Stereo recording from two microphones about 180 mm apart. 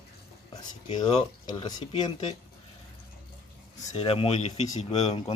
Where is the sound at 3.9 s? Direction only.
30° left (ahead or behind).